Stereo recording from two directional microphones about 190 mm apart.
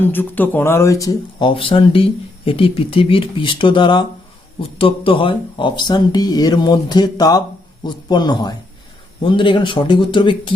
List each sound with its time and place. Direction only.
0.0 s speech: 10° left (ahead or behind); by 10.5 s 25° left (ahead or behind)